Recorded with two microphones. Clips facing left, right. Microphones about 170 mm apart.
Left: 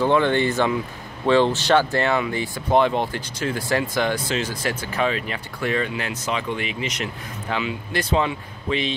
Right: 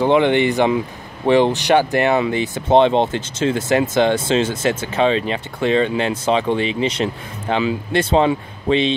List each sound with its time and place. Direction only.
0.0 s speech: 20° right (ahead or behind)